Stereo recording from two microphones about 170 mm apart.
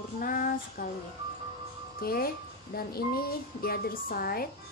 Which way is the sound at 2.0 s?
65° left (ahead or behind).